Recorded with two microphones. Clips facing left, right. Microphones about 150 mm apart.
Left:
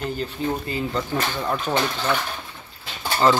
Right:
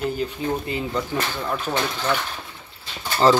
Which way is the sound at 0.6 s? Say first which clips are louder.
Even; 20° right (ahead or behind).